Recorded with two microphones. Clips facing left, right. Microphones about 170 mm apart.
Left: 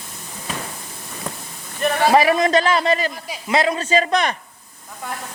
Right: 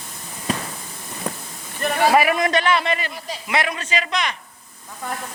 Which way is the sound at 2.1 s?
30° left (ahead or behind).